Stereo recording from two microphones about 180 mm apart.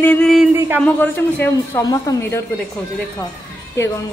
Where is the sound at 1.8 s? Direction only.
20° left (ahead or behind).